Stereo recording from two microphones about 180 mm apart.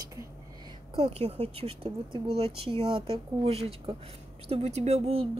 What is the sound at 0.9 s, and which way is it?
A woman's voice, 35° right (ahead or behind).